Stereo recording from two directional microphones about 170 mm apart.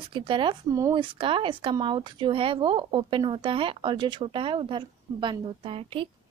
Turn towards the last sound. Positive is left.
turn(degrees=-35)  # may be behind; listen again after turning